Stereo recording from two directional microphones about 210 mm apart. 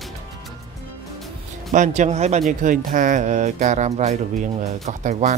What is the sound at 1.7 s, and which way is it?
A man's voice, 35° right (ahead or behind).